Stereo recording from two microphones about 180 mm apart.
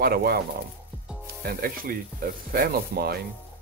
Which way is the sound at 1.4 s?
55° right (ahead or behind).